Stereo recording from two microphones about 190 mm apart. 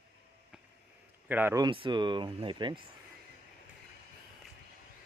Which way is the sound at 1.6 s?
25° right (ahead or behind).